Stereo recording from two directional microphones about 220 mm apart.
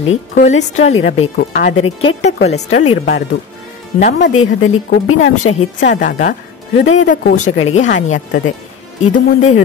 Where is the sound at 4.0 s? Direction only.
35° left (ahead or behind).